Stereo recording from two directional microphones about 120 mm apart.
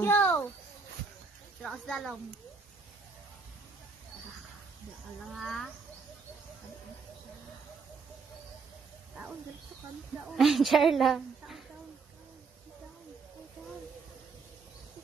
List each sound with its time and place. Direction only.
0.0 s a sound: 20° left (ahead or behind)
1.6 s a woman's voice: centre (ahead or behind)
5.3 s a woman's voice: centre (ahead or behind)
10.1 s a woman's voice: centre (ahead or behind)